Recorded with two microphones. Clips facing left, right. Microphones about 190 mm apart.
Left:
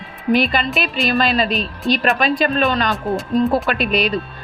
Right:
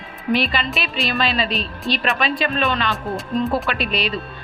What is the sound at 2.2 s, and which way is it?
A woman's voice, 45° left (ahead or behind).